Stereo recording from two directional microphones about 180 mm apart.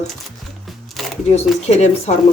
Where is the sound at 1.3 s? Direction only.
40° left (ahead or behind).